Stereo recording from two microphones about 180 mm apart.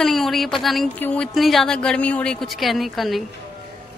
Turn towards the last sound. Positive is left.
turn(degrees=0)  # may be behind; listen again after turning